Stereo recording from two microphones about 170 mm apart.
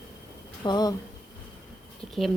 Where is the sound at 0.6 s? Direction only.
25° left (ahead or behind).